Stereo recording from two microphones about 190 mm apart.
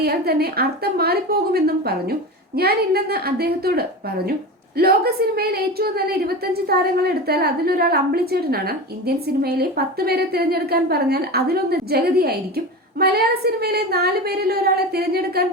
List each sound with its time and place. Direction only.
0.0 s a woman's voice: 55° right (ahead or behind)